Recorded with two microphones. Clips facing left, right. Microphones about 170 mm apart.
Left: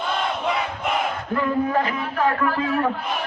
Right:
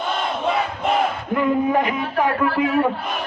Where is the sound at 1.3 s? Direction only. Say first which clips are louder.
Right 2 dB; 20° right (ahead or behind).